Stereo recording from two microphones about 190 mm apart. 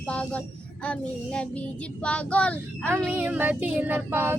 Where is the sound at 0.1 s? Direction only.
5° left (ahead or behind).